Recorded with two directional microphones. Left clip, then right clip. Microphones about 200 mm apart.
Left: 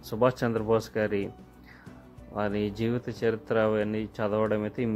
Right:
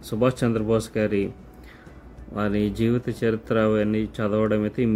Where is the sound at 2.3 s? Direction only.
10° left (ahead or behind).